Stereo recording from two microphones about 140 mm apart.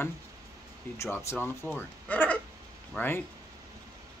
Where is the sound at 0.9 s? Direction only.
20° left (ahead or behind).